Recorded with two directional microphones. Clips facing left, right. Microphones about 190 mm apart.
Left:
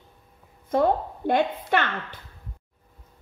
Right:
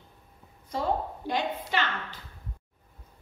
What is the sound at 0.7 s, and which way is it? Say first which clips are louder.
A woman's voice: left 7 dB; 55° left (ahead or behind).